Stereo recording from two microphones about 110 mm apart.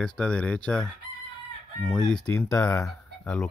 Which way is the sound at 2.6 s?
25° left (ahead or behind).